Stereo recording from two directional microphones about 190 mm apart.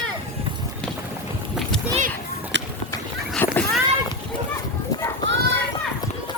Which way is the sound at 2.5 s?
70° right (ahead or behind).